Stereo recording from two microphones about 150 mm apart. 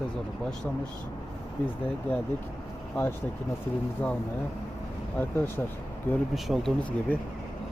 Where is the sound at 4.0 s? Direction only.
10° left (ahead or behind).